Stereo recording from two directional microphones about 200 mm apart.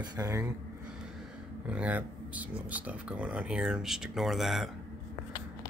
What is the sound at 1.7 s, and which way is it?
Speech, 5° right (ahead or behind).